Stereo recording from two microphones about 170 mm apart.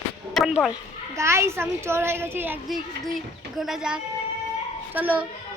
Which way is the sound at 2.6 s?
Centre (ahead or behind).